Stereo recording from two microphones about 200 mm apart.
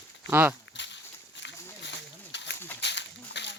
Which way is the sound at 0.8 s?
65° left (ahead or behind).